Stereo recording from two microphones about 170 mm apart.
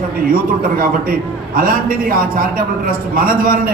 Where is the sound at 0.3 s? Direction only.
55° right (ahead or behind).